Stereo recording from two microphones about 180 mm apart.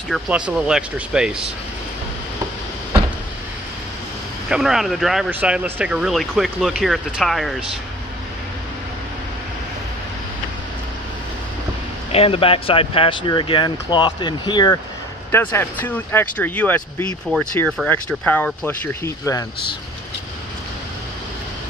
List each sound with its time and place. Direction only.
0.1 s speech: 5° right (ahead or behind)
4.5 s speech: centre (ahead or behind)
12.1 s speech: 30° left (ahead or behind)
15.3 s speech: 15° left (ahead or behind)